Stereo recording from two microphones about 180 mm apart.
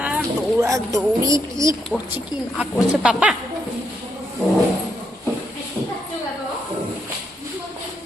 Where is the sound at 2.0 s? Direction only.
5° right (ahead or behind).